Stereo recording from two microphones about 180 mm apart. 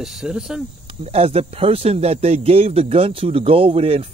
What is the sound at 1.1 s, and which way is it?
Speech, 35° right (ahead or behind).